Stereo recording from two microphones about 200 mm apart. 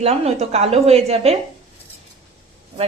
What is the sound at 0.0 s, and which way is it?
A woman's voice, 30° right (ahead or behind).